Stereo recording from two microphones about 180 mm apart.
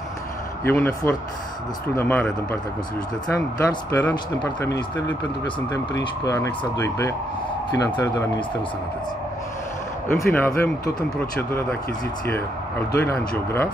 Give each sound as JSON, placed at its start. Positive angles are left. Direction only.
{"t": 0.7, "sound": "speech", "side_deg": 10}
{"t": 10.0, "sound": "speech", "side_deg": 10}